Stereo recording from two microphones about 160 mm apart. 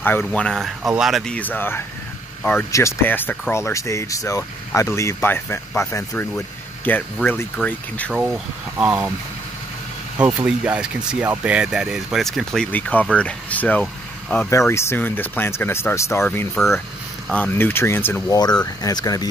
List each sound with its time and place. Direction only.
0.0 s speech: 10° left (ahead or behind)
8.1 s speech: 10° right (ahead or behind)
10.1 s speech: 10° right (ahead or behind); by 19.2 s 25° left (ahead or behind)